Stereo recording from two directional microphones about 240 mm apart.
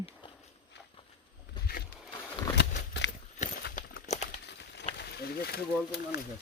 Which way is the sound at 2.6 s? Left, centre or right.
Left.